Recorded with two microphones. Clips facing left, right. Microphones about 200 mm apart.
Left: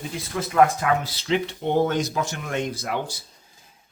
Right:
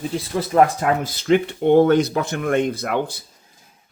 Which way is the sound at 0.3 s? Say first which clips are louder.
Right 2 dB; 40° right (ahead or behind).